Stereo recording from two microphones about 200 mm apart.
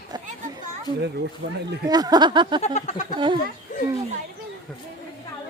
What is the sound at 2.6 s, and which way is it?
Speech, 35° left (ahead or behind).